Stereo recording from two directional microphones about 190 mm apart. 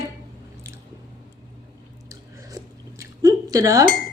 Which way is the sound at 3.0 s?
20° right (ahead or behind).